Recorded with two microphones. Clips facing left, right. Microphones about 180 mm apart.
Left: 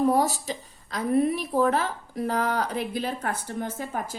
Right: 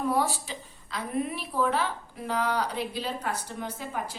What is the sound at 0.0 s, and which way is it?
A woman's voice, 40° left (ahead or behind).